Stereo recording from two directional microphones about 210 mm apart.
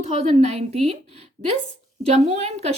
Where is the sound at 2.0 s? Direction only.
30° right (ahead or behind).